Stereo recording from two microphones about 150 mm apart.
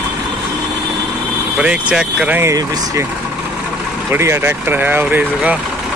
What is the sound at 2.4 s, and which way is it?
Speech, 20° right (ahead or behind).